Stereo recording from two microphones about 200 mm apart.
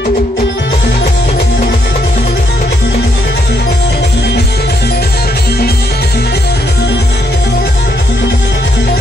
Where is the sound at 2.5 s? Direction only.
55° left (ahead or behind).